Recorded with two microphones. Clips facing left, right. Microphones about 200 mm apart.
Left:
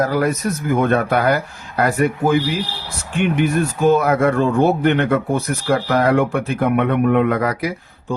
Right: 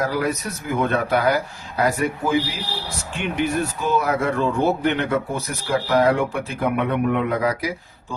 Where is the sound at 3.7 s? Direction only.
50° left (ahead or behind).